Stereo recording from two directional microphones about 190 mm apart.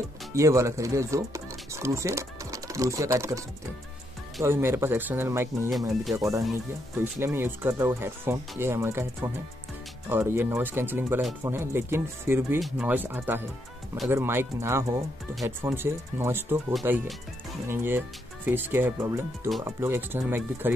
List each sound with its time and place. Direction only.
0.3 s speech: 15° right (ahead or behind)
5.7 s speech: centre (ahead or behind)
6.1 s speech: 15° right (ahead or behind)
12.5 s speech: centre (ahead or behind)